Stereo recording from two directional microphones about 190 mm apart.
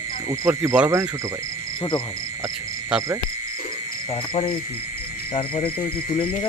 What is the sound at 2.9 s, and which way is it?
Cricket, 5° right (ahead or behind).